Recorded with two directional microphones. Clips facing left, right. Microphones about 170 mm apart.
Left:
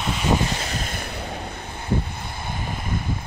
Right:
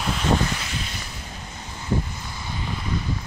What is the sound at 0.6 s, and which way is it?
Vehicle, 45° left (ahead or behind).